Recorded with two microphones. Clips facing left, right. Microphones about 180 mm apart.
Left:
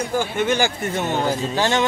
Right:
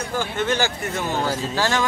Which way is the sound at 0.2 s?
15° left (ahead or behind).